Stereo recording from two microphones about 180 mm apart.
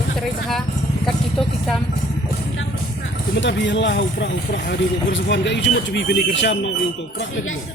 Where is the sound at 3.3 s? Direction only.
85° left.